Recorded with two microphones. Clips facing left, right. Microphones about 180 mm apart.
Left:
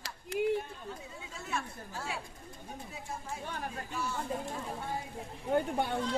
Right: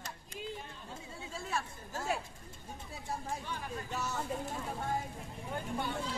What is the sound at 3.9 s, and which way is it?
Speech, 40° right (ahead or behind).